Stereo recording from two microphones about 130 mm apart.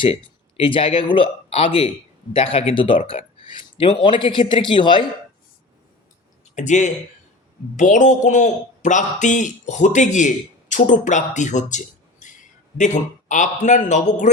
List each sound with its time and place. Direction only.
0.0 s speech: 45° left (ahead or behind)
6.6 s a man's voice: 70° left (ahead or behind)